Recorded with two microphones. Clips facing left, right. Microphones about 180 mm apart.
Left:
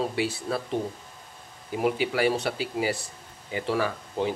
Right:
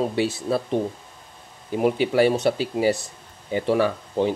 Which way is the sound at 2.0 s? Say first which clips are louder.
Right 6 dB; 25° right (ahead or behind).